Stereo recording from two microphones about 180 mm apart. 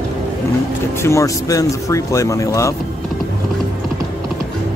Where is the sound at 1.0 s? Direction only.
15° left (ahead or behind).